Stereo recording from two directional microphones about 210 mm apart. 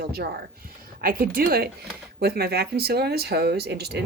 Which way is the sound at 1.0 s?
45° right (ahead or behind).